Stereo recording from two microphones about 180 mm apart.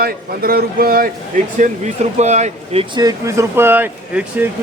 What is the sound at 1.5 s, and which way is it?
Speech, 40° right (ahead or behind).